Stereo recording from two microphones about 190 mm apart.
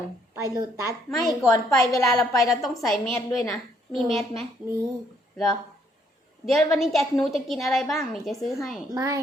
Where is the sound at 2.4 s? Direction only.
Centre (ahead or behind).